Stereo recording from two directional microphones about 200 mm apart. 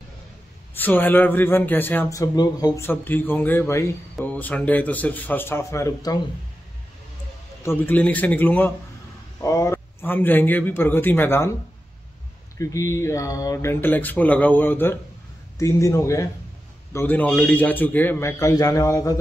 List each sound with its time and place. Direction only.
0.7 s a man's voice: 10° left (ahead or behind)
7.6 s a man's voice: 10° left (ahead or behind)
12.5 s a man's voice: 15° left (ahead or behind)